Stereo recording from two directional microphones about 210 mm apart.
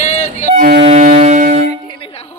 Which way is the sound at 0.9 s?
35° right (ahead or behind).